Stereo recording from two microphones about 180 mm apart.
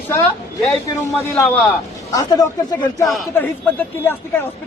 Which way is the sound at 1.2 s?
10° left (ahead or behind).